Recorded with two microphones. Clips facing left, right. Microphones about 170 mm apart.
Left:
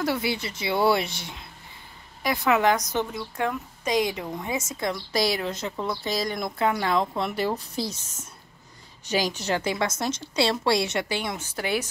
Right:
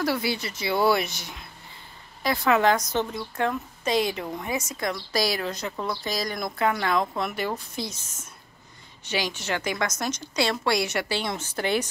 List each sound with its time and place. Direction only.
0.0 s a woman's voice: 20° left (ahead or behind)
9.0 s a woman's voice: 40° left (ahead or behind); by 11.9 s 10° left (ahead or behind)